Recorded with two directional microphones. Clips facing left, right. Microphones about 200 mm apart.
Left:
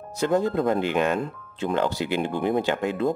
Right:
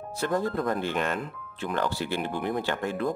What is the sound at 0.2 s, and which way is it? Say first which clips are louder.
Speech: left 5 dB; 20° left (ahead or behind).